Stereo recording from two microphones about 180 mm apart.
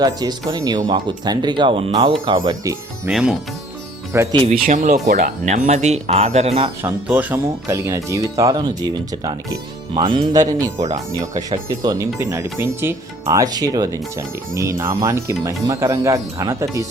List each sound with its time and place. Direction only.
0.0 s speech: 20° right (ahead or behind)
3.1 s speech: centre (ahead or behind)
4.1 s speech: 15° right (ahead or behind)
4.4 s speech: 45° right (ahead or behind)
5.0 s speech: 65° right (ahead or behind)
5.5 s speech: 40° right (ahead or behind)
6.8 s speech: 10° right (ahead or behind)